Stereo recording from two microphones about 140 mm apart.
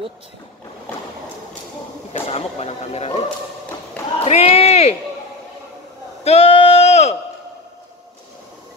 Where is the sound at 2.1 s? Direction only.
45° left (ahead or behind).